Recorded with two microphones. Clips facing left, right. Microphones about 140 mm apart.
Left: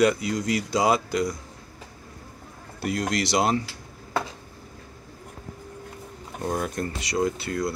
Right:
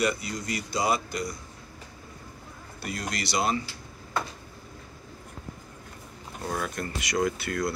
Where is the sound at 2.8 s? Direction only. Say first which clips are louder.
Left 8 dB; 80° left.